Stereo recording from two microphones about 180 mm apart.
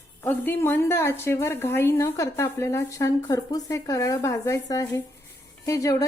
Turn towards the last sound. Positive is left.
turn(degrees=15)  # may be behind; listen again after turning